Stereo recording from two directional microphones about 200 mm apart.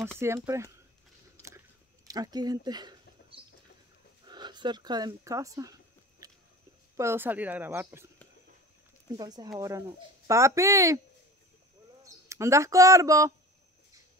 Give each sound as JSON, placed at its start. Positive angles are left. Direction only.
{"t": 0.2, "sound": "speech", "side_deg": -15}
{"t": 2.0, "sound": "a sound", "side_deg": -20}
{"t": 7.0, "sound": "speech", "side_deg": -10}
{"t": 9.1, "sound": "speech", "side_deg": -20}
{"t": 12.0, "sound": "speech", "side_deg": -15}